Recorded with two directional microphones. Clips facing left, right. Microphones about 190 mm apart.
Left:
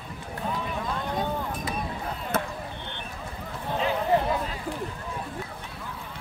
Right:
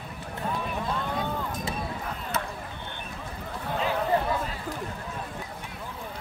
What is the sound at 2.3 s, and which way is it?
Basketball bounce, 50° left (ahead or behind).